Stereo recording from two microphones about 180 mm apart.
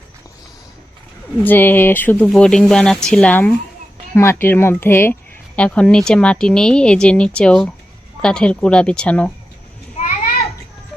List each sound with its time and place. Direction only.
1.5 s speech: 10° left (ahead or behind)
10.0 s children playing: 45° left (ahead or behind)